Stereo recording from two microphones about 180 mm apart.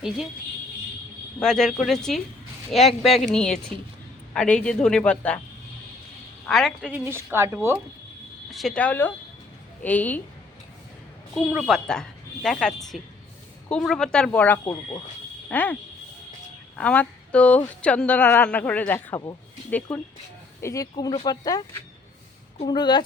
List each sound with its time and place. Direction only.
1.4 s speech: centre (ahead or behind)
6.4 s speech: centre (ahead or behind)
7.0 s speech: 15° right (ahead or behind)
8.4 s a woman's voice: centre (ahead or behind)
11.5 s speech: centre (ahead or behind)
14.6 s speech: 20° left (ahead or behind)
15.4 s a woman's voice: 10° left (ahead or behind)
19.9 s a woman's voice: 5° left (ahead or behind); by 23.0 s 25° left (ahead or behind)